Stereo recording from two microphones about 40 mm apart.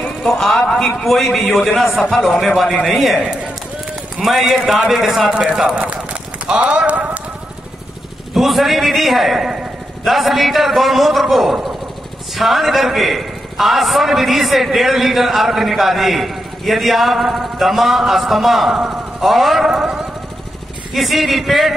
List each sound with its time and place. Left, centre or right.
0.3 s speech: centre
1.0 s a man's voice: centre
4.2 s a man's voice: centre
5.3 s speech: centre
6.4 s speech: right
8.4 s a man's voice: centre
20.9 s a man's voice: centre